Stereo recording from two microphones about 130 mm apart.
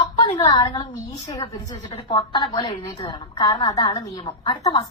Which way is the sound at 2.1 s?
40° left (ahead or behind).